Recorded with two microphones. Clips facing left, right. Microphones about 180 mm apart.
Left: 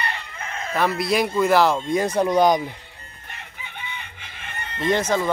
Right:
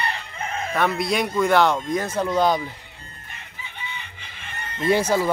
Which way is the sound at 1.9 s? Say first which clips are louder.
Left 3 dB; 15° left (ahead or behind).